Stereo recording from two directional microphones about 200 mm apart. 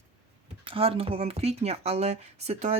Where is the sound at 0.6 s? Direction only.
25° right (ahead or behind).